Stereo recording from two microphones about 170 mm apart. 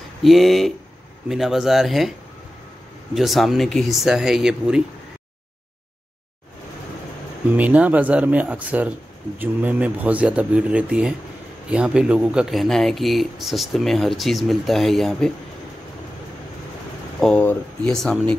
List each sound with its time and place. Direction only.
0.2 s speech: centre (ahead or behind)
3.2 s speech: centre (ahead or behind)
7.5 s speech: 10° right (ahead or behind)
17.2 s speech: 10° left (ahead or behind)